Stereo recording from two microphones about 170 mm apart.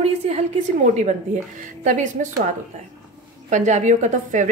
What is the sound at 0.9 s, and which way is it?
A woman's voice, 45° right (ahead or behind).